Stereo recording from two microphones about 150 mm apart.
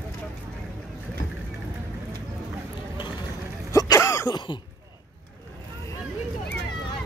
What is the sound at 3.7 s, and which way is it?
Throat clearing, 20° left (ahead or behind).